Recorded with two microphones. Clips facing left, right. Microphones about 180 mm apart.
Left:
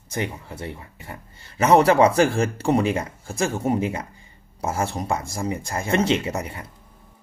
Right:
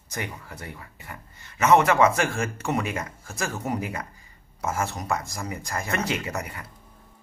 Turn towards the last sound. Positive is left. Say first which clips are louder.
# left 6 dB
turn(degrees=25)  # may be behind; listen again after turning